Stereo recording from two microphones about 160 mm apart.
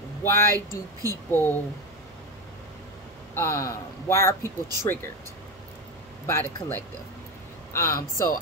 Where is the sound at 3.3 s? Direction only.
20° left (ahead or behind).